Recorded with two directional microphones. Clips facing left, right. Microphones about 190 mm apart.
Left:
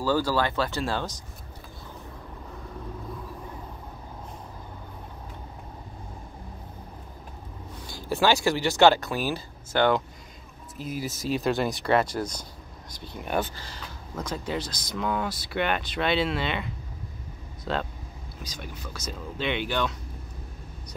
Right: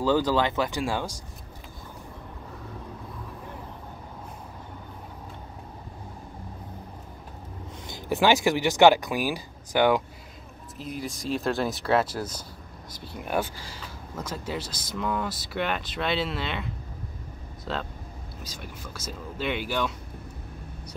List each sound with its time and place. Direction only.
0.0 s speech: 20° right (ahead or behind)
7.8 s speech: 20° right (ahead or behind)
10.8 s speech: 5° left (ahead or behind)